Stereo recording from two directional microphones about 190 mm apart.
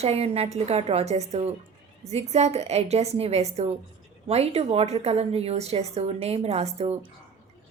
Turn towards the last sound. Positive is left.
turn(degrees=-35)  # may be behind; listen again after turning